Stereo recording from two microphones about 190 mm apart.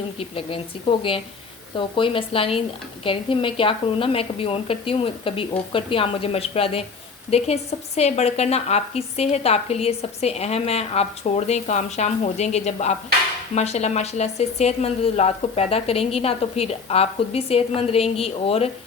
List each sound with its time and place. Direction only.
0.2 s a woman's voice: 30° left (ahead or behind)